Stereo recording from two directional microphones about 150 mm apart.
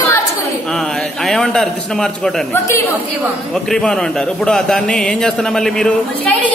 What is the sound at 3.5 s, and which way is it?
A man's voice, 5° left (ahead or behind).